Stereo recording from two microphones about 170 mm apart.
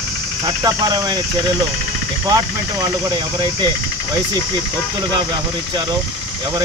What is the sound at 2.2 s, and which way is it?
Speech, 20° right (ahead or behind).